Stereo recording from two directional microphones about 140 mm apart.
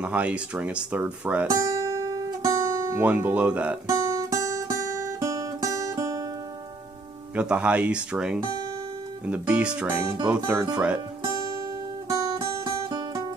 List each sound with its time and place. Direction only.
0.0 s speech: 10° right (ahead or behind)
1.5 s guitar: 25° right (ahead or behind)
3.8 s music: 25° right (ahead or behind)
7.3 s speech: 10° right (ahead or behind)
12.1 s music: 25° right (ahead or behind)